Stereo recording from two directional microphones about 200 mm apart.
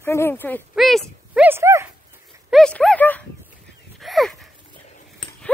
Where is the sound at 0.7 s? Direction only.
Centre (ahead or behind).